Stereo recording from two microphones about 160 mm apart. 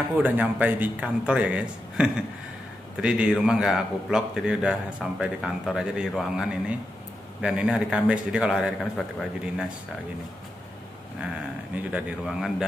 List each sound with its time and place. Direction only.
0.2 s a man's voice: 10° right (ahead or behind)
11.7 s a man's voice: 10° right (ahead or behind)